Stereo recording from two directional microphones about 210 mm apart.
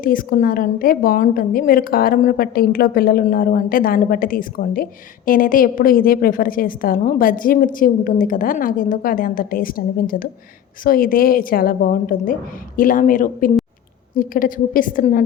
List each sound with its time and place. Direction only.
0.0 s a woman's voice: 40° left (ahead or behind)